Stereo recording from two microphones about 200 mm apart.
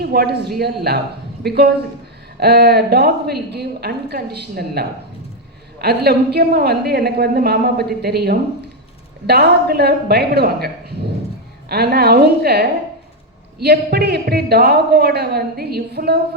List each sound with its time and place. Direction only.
0.0 s a woman's voice: 50° right (ahead or behind)